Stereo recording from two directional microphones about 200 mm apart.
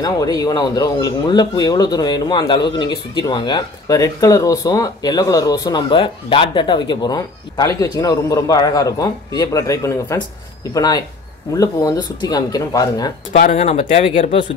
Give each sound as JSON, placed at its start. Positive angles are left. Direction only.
{"t": 0.0, "sound": "speech", "side_deg": 20}
{"t": 13.3, "sound": "speech", "side_deg": 35}